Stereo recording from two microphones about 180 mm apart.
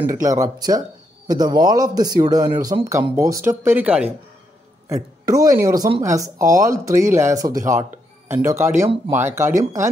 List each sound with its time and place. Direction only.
0.0 s speech: 20° right (ahead or behind)
4.8 s speech: 20° right (ahead or behind)